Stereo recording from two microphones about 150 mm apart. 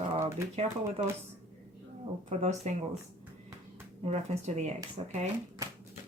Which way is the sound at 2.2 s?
50° right (ahead or behind).